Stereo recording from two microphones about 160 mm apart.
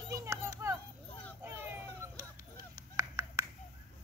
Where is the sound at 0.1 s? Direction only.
15° right (ahead or behind).